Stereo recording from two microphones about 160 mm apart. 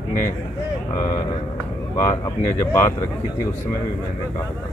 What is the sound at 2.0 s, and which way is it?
Speech, 20° left (ahead or behind).